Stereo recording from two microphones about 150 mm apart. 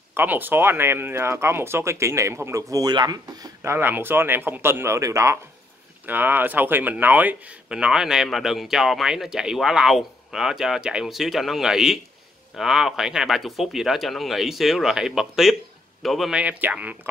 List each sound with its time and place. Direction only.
0.1 s speech: 15° right (ahead or behind)